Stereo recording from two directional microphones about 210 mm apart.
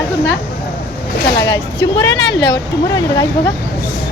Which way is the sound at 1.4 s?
55° left (ahead or behind).